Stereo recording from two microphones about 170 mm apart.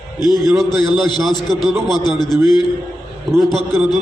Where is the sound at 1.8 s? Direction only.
25° left (ahead or behind).